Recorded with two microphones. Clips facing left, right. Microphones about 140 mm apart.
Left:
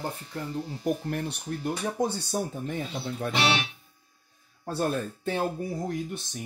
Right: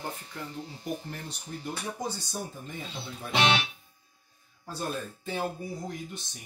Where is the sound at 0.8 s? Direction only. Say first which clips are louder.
Left 8 dB; 65° left (ahead or behind).